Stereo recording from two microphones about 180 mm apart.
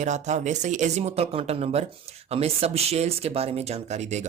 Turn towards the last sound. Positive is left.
turn(degrees=-35)  # may be behind; listen again after turning